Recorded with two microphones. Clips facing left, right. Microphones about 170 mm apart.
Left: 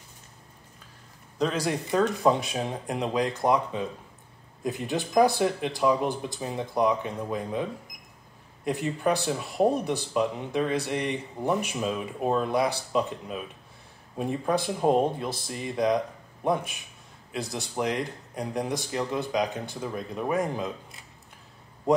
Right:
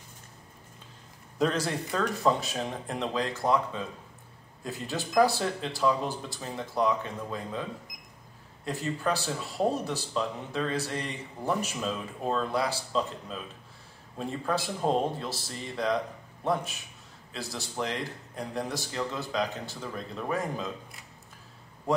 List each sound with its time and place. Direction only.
1.6 s speech: 15° left (ahead or behind)
8.6 s a man's voice: 15° left (ahead or behind)